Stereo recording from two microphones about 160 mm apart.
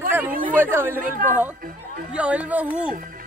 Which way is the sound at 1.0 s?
50° right (ahead or behind).